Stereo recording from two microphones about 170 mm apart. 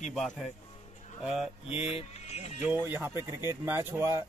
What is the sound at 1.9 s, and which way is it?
Speech, 40° left (ahead or behind).